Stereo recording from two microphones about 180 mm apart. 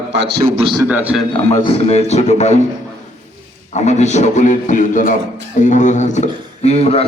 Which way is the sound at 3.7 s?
40° left (ahead or behind).